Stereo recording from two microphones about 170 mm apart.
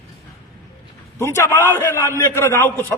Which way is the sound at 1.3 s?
15° left (ahead or behind).